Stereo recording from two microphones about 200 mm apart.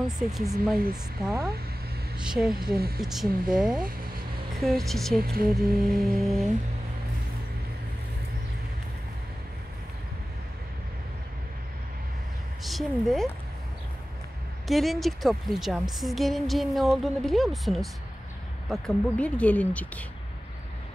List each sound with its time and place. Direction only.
0.3 s a woman's voice: centre (ahead or behind)
2.1 s a woman's voice: 5° right (ahead or behind)
3.8 s vehicle: 45° right (ahead or behind)
4.6 s a woman's voice: centre (ahead or behind)
5.2 s speech: 50° right (ahead or behind)
5.5 s a woman's voice: centre (ahead or behind)
12.6 s a woman's voice: centre (ahead or behind)
14.7 s a woman's voice: centre (ahead or behind)